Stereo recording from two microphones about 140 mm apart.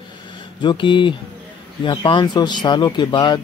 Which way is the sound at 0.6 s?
35° left (ahead or behind).